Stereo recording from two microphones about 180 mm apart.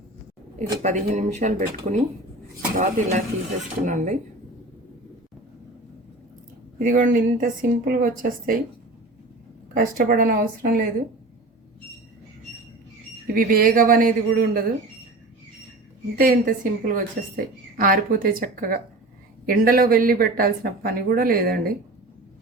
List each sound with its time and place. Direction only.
0.8 s a woman's voice: 40° right (ahead or behind)
6.7 s a woman's voice: 45° right (ahead or behind)
9.7 s a woman's voice: 50° right (ahead or behind)
13.3 s a woman's voice: 50° right (ahead or behind)
16.1 s a woman's voice: 50° right (ahead or behind)